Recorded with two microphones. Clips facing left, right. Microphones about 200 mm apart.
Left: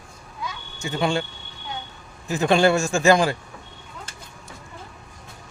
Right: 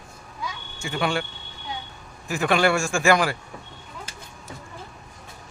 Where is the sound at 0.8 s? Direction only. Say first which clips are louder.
Left 2 dB; 20° left (ahead or behind).